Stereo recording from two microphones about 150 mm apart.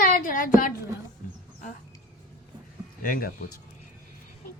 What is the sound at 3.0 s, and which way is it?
Speech, 70° left (ahead or behind).